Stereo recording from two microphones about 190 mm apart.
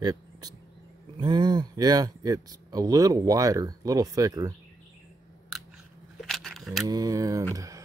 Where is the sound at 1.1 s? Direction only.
25° right (ahead or behind).